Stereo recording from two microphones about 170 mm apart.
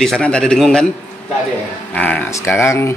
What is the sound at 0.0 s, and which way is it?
Speech, 5° left (ahead or behind).